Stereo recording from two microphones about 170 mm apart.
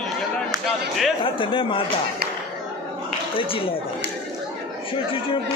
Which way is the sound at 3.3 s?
30° left (ahead or behind).